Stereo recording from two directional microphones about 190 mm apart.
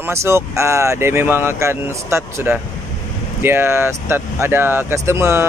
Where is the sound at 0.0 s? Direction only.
15° right (ahead or behind).